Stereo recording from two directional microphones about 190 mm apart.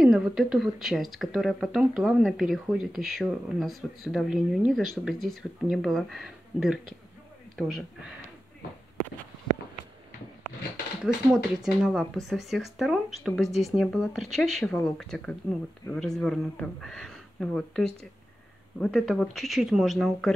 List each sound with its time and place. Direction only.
0.0 s speech: 5° right (ahead or behind)
11.3 s speech: 5° right (ahead or behind)